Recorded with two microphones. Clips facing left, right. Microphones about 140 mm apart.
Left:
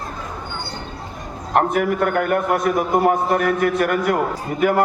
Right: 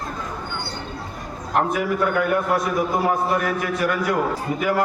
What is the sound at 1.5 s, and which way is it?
A man's voice, 55° left (ahead or behind).